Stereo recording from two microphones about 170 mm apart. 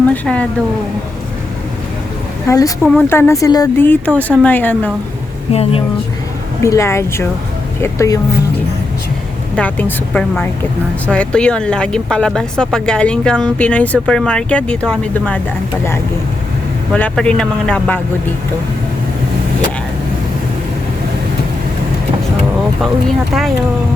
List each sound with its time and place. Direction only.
0.1 s speech: 5° left (ahead or behind)
2.5 s speech: 20° left (ahead or behind)
5.5 s speech: 35° left (ahead or behind)
6.6 s speech: 15° left (ahead or behind)
9.6 s speech: 10° left (ahead or behind)
16.9 s speech: 5° left (ahead or behind)
22.8 s speech: centre (ahead or behind)